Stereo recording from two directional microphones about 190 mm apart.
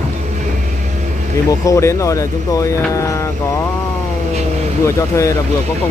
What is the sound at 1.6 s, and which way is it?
Speech, 15° left (ahead or behind).